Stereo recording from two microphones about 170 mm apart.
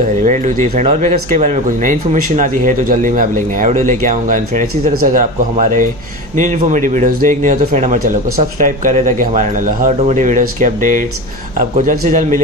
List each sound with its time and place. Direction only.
0.2 s speech: 45° right (ahead or behind)